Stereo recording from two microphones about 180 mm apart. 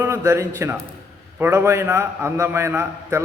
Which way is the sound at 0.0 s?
15° right (ahead or behind).